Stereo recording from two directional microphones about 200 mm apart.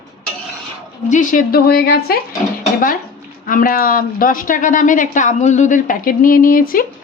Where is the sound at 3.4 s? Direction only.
45° left (ahead or behind).